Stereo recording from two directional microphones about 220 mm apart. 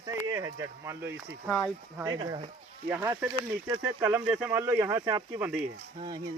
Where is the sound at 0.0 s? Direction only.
15° right (ahead or behind).